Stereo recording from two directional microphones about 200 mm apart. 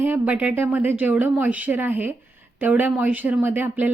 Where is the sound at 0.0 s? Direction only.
10° right (ahead or behind).